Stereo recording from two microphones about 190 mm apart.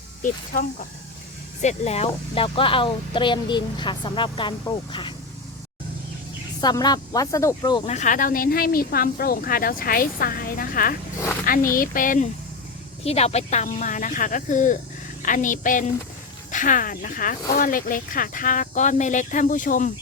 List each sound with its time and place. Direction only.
0.2 s speech: 45° left (ahead or behind); by 5.1 s 25° left (ahead or behind)
6.6 s speech: 20° left (ahead or behind)
7.9 s speech: 40° left (ahead or behind)
13.1 s speech: 35° left (ahead or behind)